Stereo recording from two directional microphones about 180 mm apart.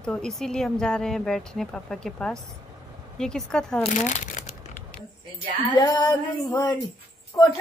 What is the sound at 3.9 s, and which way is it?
Crumpling, 40° left (ahead or behind).